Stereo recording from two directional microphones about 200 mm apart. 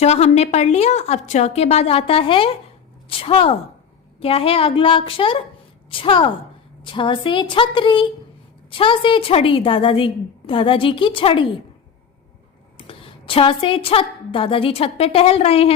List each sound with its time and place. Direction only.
0.0 s a woman's voice: 30° left (ahead or behind)
12.7 s a woman's voice: 25° left (ahead or behind)